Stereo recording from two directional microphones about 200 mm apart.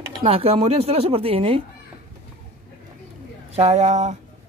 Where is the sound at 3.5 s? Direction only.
30° right (ahead or behind).